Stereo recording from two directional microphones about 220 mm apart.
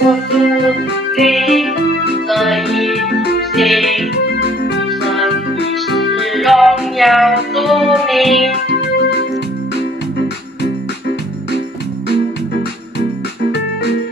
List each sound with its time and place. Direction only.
0.0 s music: centre (ahead or behind)
3.1 s music: 45° left (ahead or behind)
3.5 s music: centre (ahead or behind)
5.0 s keyboard: centre (ahead or behind)
5.9 s music: centre (ahead or behind)
10.6 s music: 50° left (ahead or behind)